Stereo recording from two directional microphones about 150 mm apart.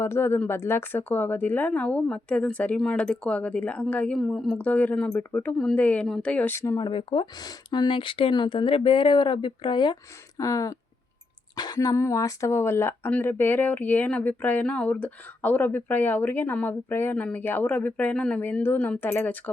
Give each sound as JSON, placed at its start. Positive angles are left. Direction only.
{"t": 0.0, "sound": "speech", "side_deg": 15}
{"t": 6.8, "sound": "speech", "side_deg": 35}